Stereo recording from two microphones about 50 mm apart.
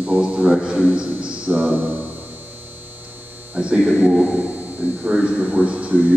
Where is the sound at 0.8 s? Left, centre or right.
Right.